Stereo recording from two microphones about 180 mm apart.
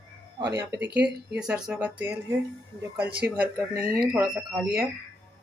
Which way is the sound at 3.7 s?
55° right (ahead or behind).